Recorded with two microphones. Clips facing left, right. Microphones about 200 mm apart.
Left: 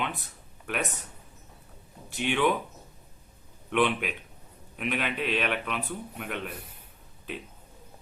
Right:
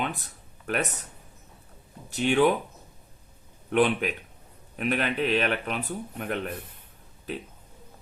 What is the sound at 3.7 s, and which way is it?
Speech, 40° right (ahead or behind).